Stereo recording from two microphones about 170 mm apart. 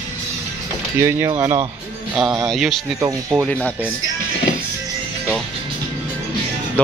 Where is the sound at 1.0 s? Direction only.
15° right (ahead or behind).